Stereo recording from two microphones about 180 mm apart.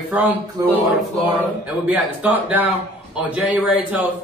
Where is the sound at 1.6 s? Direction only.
10° right (ahead or behind).